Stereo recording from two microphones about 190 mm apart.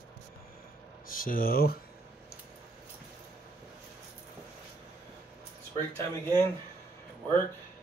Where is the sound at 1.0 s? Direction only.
45° left (ahead or behind).